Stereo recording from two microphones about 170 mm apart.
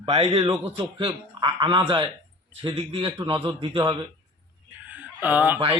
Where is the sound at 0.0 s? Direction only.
35° right (ahead or behind).